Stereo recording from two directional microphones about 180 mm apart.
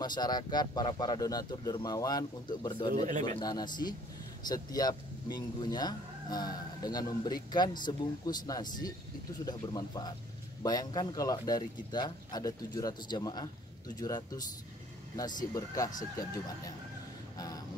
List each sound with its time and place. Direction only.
0.0 s speech: 25° left (ahead or behind)
2.9 s speech: 45° right (ahead or behind)
3.3 s speech: 25° left (ahead or behind)
15.5 s speech: 20° left (ahead or behind)